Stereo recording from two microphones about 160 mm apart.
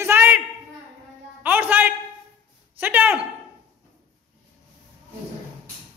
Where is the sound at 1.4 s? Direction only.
10° right (ahead or behind).